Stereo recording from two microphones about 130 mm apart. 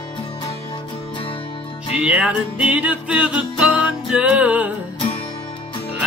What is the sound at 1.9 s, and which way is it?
Music, 10° right (ahead or behind).